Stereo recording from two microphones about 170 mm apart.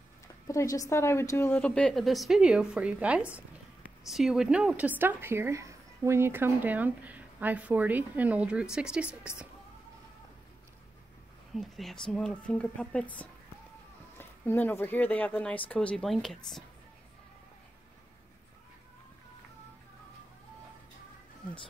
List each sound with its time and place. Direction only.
0.5 s a woman's voice: 20° left (ahead or behind); by 9.3 s 5° right (ahead or behind)
11.5 s a woman's voice: centre (ahead or behind)